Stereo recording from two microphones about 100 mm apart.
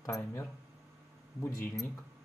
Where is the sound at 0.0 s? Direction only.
30° left (ahead or behind).